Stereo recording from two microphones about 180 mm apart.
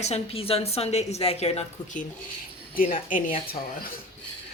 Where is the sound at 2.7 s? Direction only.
50° left (ahead or behind).